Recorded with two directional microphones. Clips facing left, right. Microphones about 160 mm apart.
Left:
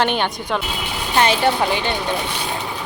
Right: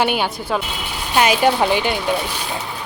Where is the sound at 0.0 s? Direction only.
10° right (ahead or behind).